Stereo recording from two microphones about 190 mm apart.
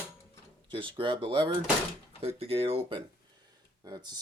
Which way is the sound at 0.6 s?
25° right (ahead or behind).